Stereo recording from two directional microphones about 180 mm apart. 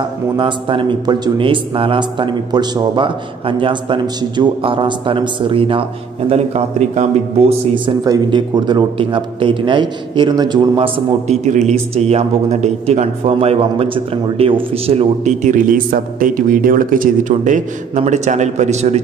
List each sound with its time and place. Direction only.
0.4 s speech: 25° right (ahead or behind)
11.2 s a man's voice: 40° right (ahead or behind)